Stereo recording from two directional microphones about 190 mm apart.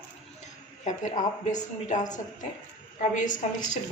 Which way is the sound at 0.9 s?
40° left (ahead or behind).